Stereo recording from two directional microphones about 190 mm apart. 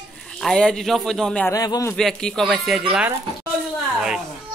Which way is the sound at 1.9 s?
Centre (ahead or behind).